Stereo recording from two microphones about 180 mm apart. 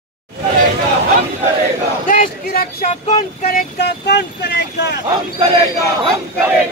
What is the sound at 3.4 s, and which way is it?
Speech, 50° left (ahead or behind).